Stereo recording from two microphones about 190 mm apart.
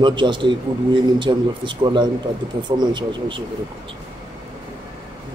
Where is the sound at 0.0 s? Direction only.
25° right (ahead or behind).